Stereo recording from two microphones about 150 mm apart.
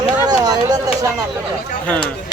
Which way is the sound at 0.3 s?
25° right (ahead or behind).